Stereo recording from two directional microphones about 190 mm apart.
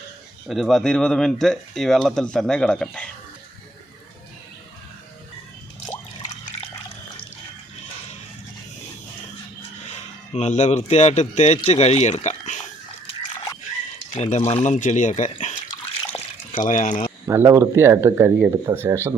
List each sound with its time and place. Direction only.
0.4 s speech: centre (ahead or behind)
9.9 s speech: 35° left (ahead or behind)
14.2 s speech: 40° left (ahead or behind)
16.6 s speech: 40° left (ahead or behind)
17.2 s speech: 15° right (ahead or behind)